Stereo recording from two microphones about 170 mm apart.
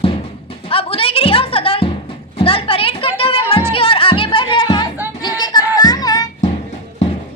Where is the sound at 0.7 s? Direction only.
35° left (ahead or behind).